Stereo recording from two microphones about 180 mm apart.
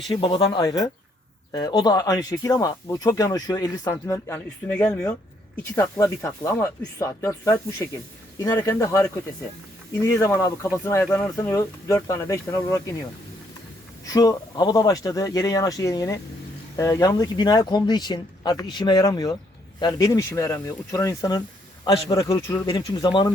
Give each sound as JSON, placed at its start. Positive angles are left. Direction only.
{"t": 0.1, "sound": "speech", "side_deg": 25}
{"t": 14.1, "sound": "speech", "side_deg": 20}
{"t": 22.7, "sound": "speech", "side_deg": 25}